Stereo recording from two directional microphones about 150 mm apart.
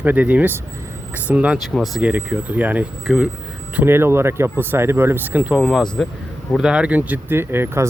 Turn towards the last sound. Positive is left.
turn(degrees=-15)  # may be behind; listen again after turning